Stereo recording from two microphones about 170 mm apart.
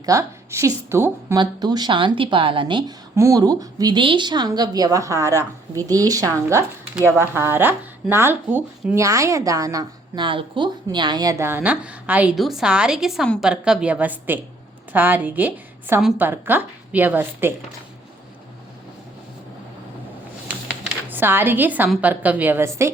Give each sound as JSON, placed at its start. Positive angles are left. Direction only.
{"t": 0.0, "sound": "a woman's voice", "side_deg": -20}
{"t": 21.1, "sound": "a woman's voice", "side_deg": -10}